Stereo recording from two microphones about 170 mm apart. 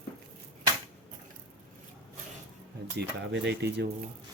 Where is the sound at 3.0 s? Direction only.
85° right.